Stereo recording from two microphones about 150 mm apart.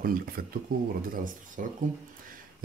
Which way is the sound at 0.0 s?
75° right (ahead or behind).